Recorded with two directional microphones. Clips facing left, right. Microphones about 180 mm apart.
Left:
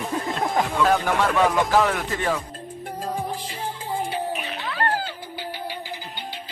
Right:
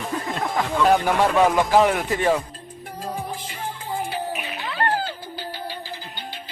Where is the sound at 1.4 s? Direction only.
15° right (ahead or behind).